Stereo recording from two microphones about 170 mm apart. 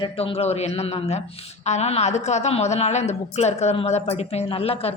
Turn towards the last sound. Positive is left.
turn(degrees=35)  # may be behind; listen again after turning